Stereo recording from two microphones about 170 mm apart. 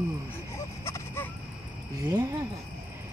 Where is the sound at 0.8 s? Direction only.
15° left (ahead or behind).